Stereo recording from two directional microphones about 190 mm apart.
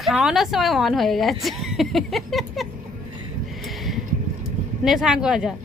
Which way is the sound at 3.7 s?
Centre (ahead or behind).